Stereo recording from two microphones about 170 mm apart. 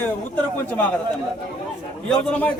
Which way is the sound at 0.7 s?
10° left (ahead or behind).